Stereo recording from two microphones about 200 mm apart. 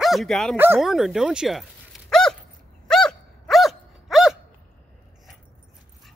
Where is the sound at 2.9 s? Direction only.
Centre (ahead or behind).